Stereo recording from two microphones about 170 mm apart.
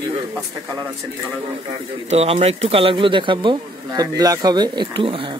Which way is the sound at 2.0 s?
35° right (ahead or behind).